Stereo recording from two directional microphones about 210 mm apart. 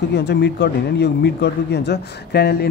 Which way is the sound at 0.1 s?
55° left (ahead or behind).